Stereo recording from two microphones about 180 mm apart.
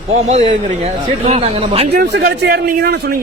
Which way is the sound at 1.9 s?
70° right (ahead or behind).